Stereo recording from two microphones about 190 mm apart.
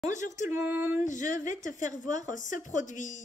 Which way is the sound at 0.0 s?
40° left (ahead or behind).